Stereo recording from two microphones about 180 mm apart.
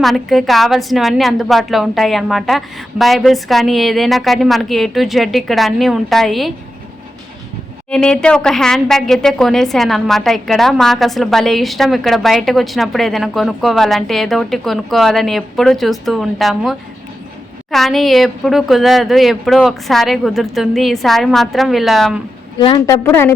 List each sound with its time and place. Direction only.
0.0 s a woman's voice: centre (ahead or behind)
7.9 s a woman's voice: 5° left (ahead or behind)
22.5 s a woman's voice: 25° left (ahead or behind)
23.0 s speech: 15° left (ahead or behind)